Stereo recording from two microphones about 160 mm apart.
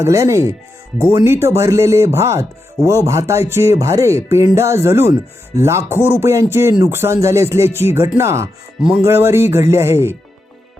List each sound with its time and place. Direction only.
0.0 s speech: 20° right (ahead or behind)